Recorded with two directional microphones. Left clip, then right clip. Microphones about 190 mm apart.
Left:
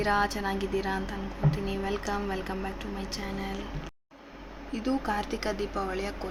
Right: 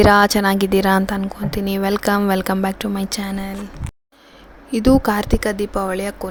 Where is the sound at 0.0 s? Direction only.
60° right (ahead or behind).